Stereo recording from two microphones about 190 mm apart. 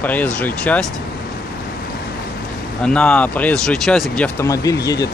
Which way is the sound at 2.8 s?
5° left (ahead or behind).